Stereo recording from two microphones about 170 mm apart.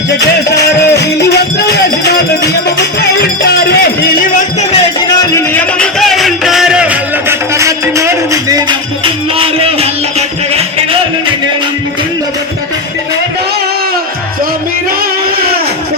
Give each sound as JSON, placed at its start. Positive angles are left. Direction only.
{"t": 0.5, "sound": "music", "side_deg": 75}
{"t": 4.9, "sound": "music", "side_deg": 15}
{"t": 9.0, "sound": "music", "side_deg": -35}